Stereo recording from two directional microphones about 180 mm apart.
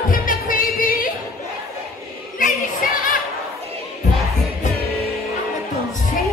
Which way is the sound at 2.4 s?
55° left (ahead or behind).